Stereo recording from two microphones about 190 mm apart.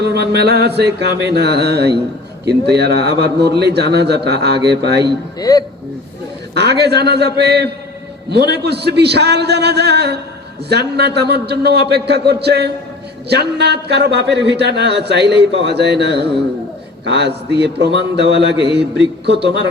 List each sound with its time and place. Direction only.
0.0 s a man's voice: 60° right (ahead or behind)
5.4 s speech: 20° left (ahead or behind)
6.5 s a man's voice: 60° right (ahead or behind)